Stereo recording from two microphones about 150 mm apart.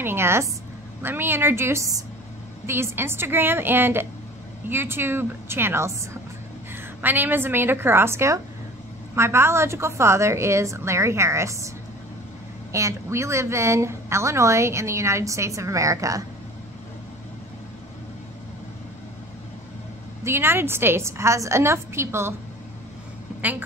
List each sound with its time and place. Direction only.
0.0 s a woman's voice: 15° right (ahead or behind)
12.7 s a woman's voice: 20° right (ahead or behind)
20.2 s a woman's voice: 15° right (ahead or behind)